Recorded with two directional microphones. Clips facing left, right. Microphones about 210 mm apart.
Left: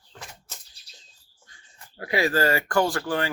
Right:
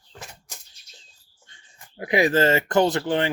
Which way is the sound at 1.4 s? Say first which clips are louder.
Even; 20° right (ahead or behind).